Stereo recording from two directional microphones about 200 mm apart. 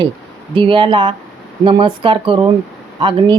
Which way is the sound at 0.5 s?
25° right (ahead or behind).